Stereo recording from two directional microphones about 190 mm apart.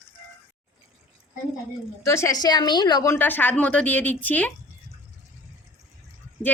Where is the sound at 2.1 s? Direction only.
15° left (ahead or behind).